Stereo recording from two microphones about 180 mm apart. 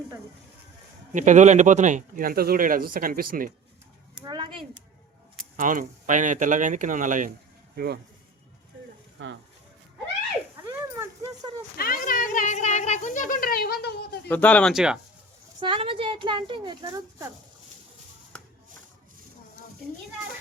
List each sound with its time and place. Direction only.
1.1 s speech: 45° right (ahead or behind)
4.2 s speech: 25° right (ahead or behind)
5.5 s speech: 45° right (ahead or behind)
9.2 s speech: 90° right
10.7 s a sound: 15° right (ahead or behind)
11.8 s a sound: 55° left (ahead or behind)
14.3 s speech: 5° left (ahead or behind)
15.6 s speech: 30° right (ahead or behind)